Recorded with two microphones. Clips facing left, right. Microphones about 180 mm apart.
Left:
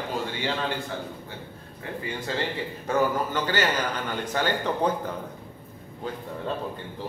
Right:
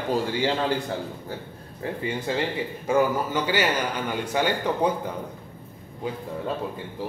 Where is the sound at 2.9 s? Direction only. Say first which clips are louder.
Right 2 dB; 10° right (ahead or behind).